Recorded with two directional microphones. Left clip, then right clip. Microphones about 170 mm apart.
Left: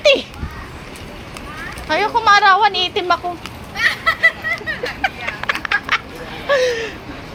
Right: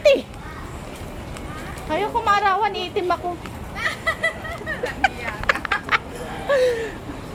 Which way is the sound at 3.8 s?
15° left (ahead or behind).